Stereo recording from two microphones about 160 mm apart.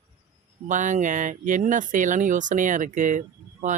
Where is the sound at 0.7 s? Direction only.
50° right (ahead or behind).